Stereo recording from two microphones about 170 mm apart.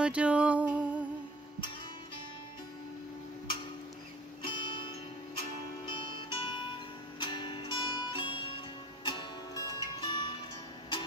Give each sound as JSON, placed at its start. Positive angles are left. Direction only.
{"t": 0.0, "sound": "music", "side_deg": -5}
{"t": 4.5, "sound": "music", "side_deg": 30}